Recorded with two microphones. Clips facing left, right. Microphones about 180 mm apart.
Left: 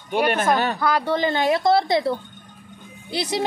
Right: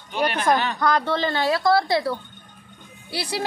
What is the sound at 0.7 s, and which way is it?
A woman's voice, 10° left (ahead or behind).